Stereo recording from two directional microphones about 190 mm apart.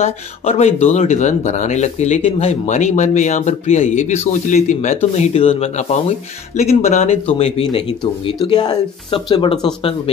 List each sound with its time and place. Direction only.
0.0 s speech: 35° left (ahead or behind)